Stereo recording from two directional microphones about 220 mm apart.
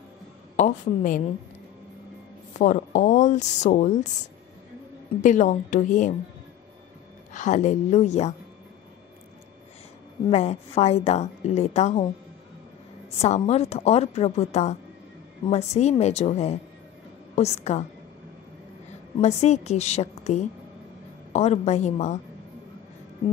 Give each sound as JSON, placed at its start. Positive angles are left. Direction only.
{"t": 0.6, "sound": "speech", "side_deg": 35}
{"t": 2.6, "sound": "speech", "side_deg": 35}
{"t": 5.2, "sound": "speech", "side_deg": 35}
{"t": 7.3, "sound": "speech", "side_deg": 35}
{"t": 10.3, "sound": "a woman's voice", "side_deg": 30}
{"t": 13.2, "sound": "a woman's voice", "side_deg": 30}
{"t": 19.1, "sound": "a woman's voice", "side_deg": 30}